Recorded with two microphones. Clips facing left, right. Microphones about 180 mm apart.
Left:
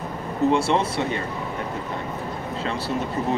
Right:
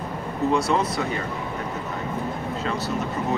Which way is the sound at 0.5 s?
30° left (ahead or behind).